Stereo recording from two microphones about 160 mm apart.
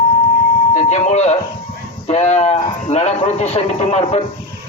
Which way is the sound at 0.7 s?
45° left (ahead or behind).